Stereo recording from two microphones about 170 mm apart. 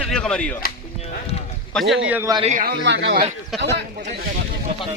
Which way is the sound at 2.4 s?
45° right (ahead or behind).